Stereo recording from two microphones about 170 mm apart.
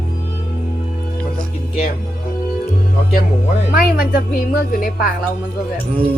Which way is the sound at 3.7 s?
55° left (ahead or behind).